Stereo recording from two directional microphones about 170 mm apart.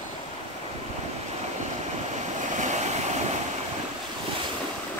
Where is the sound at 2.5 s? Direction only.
45° right (ahead or behind).